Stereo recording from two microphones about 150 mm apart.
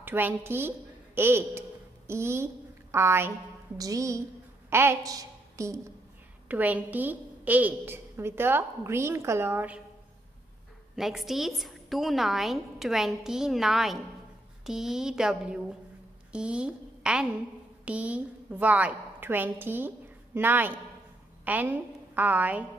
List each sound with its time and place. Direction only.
0.0 s a woman's voice: 15° right (ahead or behind)
6.5 s a woman's voice: 10° right (ahead or behind)
11.0 s a woman's voice: centre (ahead or behind)